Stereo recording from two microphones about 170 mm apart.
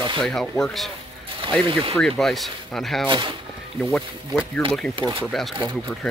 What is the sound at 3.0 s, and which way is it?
Speech, 30° right (ahead or behind).